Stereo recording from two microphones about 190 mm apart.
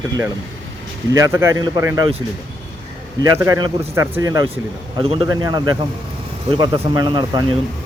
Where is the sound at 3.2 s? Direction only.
20° right (ahead or behind).